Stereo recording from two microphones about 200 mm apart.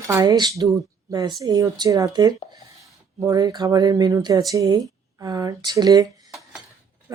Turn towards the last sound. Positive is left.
turn(degrees=-20)  # may be behind; listen again after turning